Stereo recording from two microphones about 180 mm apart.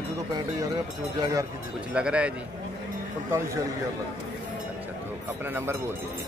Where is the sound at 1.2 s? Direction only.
20° right (ahead or behind).